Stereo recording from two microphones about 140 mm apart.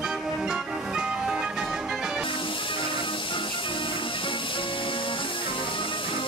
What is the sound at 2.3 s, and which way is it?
Music, 35° left (ahead or behind).